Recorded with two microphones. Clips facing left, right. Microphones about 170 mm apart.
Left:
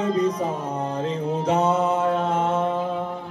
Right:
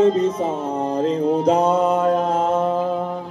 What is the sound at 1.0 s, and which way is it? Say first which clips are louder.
Mantra: right 9 dB; 35° right (ahead or behind).